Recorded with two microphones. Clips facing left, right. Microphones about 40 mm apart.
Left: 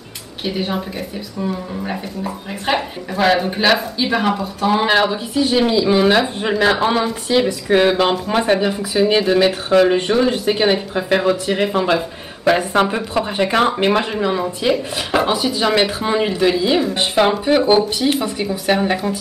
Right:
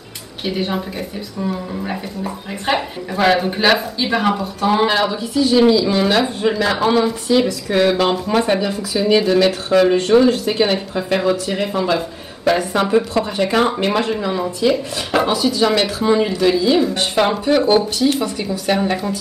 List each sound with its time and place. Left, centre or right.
0.5 s speech: centre
4.8 s speech: centre
15.7 s speech: centre